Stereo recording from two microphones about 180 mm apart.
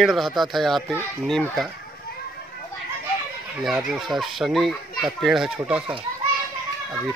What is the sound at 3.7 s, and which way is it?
Speech, centre (ahead or behind).